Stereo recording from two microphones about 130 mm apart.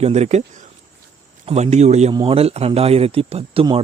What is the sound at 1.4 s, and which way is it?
Speech, 60° right (ahead or behind).